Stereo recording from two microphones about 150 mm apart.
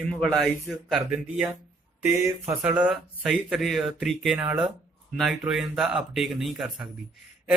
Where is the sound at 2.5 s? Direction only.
10° right (ahead or behind).